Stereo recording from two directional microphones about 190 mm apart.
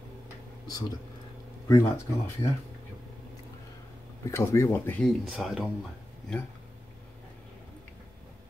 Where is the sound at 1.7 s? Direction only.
15° left (ahead or behind).